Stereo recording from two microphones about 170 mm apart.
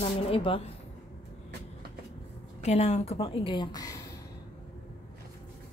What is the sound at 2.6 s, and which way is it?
A woman's voice, 40° left (ahead or behind).